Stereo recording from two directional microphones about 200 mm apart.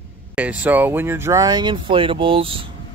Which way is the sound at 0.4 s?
10° right (ahead or behind).